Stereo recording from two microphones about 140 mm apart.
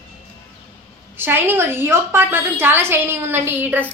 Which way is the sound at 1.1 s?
15° right (ahead or behind).